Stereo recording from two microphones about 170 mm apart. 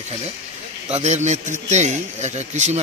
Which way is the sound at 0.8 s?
40° right (ahead or behind).